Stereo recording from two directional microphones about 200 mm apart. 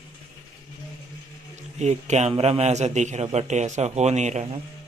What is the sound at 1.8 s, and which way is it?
A man's voice, 35° right (ahead or behind).